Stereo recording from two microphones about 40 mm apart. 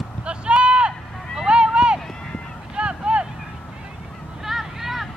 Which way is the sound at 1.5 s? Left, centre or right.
Right.